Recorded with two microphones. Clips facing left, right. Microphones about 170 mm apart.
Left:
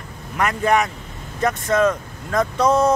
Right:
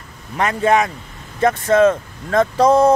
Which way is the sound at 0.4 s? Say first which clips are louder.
Right 3 dB; 25° right (ahead or behind).